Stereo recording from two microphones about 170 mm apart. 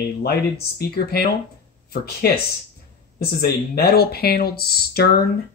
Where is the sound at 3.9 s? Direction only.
65° left (ahead or behind).